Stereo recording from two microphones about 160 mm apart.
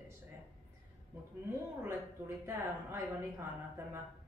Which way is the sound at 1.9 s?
15° right (ahead or behind).